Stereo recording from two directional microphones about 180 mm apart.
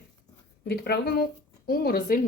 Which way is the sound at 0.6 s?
65° left (ahead or behind).